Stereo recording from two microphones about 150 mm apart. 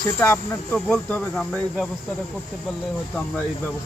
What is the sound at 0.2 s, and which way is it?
Speech, 10° left (ahead or behind).